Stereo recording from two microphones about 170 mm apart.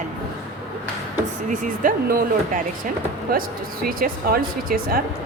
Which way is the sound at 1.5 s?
55° right (ahead or behind).